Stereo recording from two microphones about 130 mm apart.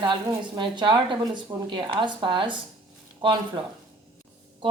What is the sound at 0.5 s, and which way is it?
A woman's voice, 35° right (ahead or behind).